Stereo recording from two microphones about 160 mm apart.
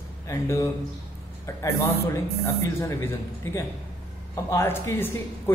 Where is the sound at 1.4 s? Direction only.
20° left (ahead or behind).